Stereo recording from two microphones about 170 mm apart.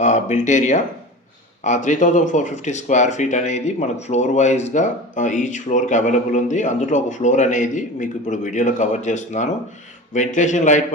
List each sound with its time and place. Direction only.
0.0 s speech: 45° left (ahead or behind)